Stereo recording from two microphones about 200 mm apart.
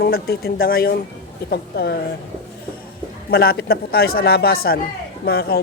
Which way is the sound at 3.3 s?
50° left (ahead or behind).